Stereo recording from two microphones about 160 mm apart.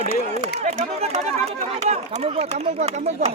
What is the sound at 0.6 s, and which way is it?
Speech, 40° right (ahead or behind).